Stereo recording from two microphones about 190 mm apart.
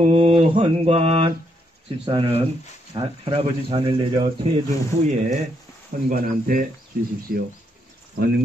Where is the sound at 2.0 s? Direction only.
25° right (ahead or behind).